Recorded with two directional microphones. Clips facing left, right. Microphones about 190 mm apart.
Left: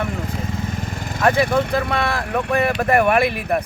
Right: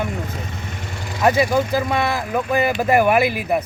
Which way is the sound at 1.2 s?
5° right (ahead or behind).